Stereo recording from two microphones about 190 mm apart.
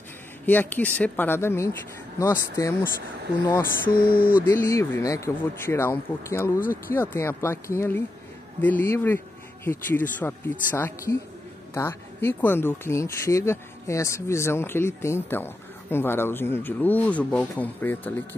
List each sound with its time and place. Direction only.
0.5 s speech: 10° left (ahead or behind)
3.4 s a sound: 20° left (ahead or behind)
4.5 s speech: 15° left (ahead or behind)